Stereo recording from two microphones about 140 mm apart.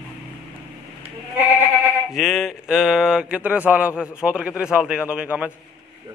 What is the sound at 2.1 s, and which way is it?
Speech, centre (ahead or behind).